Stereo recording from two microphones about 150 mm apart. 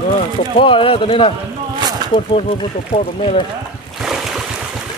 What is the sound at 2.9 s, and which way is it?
Speech, 45° left (ahead or behind).